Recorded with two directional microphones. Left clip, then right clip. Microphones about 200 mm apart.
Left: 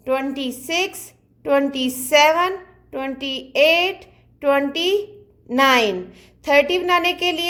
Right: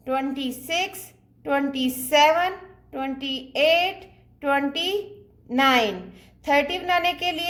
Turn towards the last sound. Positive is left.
turn(degrees=20)  # may be behind; listen again after turning